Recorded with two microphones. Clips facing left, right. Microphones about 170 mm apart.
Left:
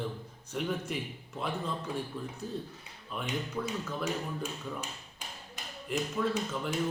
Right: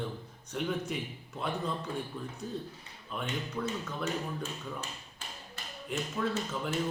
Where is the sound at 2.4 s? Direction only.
Centre (ahead or behind).